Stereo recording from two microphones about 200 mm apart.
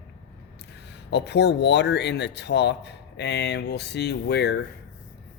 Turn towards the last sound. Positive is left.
turn(degrees=55)  # may be behind; listen again after turning